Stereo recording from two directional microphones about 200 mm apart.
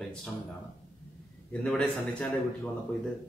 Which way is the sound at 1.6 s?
5° left (ahead or behind).